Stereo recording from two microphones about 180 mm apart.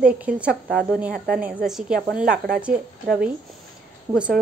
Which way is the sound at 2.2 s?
55° right (ahead or behind).